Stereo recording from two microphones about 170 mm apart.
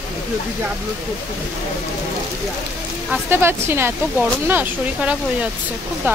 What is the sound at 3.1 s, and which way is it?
Speech, 15° right (ahead or behind).